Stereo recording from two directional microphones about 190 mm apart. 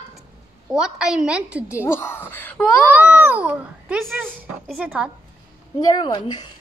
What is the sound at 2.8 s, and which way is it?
A child's voice, 10° right (ahead or behind).